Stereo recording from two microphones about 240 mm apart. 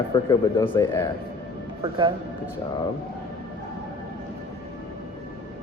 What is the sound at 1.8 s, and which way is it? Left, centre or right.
Speech, centre.